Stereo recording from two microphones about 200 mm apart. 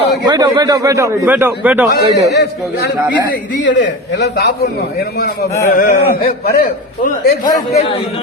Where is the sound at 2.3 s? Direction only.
55° left (ahead or behind).